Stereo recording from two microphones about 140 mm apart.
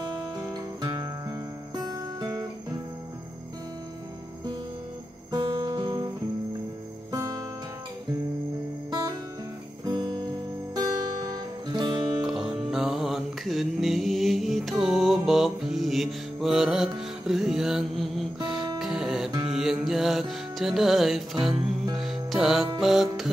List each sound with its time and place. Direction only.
0.0 s music: 30° right (ahead or behind)
1.9 s guitar: 25° right (ahead or behind)
5.3 s guitar: 35° right (ahead or behind)
7.1 s music: 25° right (ahead or behind)
9.8 s music: 30° right (ahead or behind)
11.2 s music: 30° right (ahead or behind)
12.2 s music: 5° right (ahead or behind)